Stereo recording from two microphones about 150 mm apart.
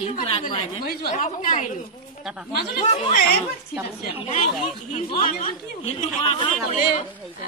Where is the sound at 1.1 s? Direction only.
60° left (ahead or behind).